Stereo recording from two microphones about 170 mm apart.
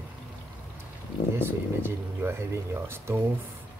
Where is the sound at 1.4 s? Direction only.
15° right (ahead or behind).